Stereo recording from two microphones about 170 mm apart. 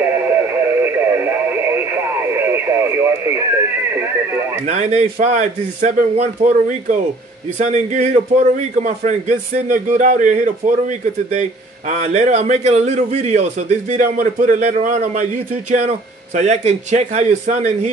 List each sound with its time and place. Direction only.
0.0 s radio: 10° right (ahead or behind)
4.6 s a man's voice: 40° right (ahead or behind)